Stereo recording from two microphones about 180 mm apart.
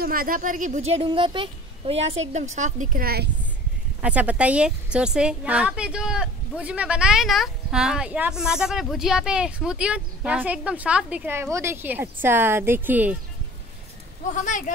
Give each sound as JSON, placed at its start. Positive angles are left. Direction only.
{"t": 0.0, "sound": "speech", "side_deg": -55}
{"t": 4.0, "sound": "a woman's voice", "side_deg": -10}
{"t": 14.3, "sound": "speech", "side_deg": 45}